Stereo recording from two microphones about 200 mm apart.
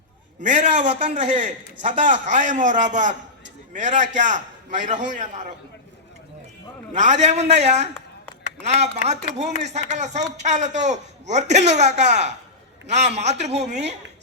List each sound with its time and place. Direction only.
0.4 s a man's voice: 35° right (ahead or behind)
6.9 s a man's voice: 35° right (ahead or behind)